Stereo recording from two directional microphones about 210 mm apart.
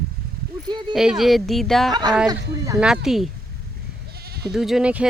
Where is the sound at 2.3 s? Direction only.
15° right (ahead or behind).